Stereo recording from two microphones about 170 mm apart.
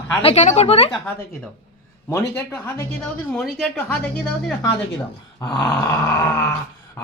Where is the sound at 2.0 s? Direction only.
15° left (ahead or behind).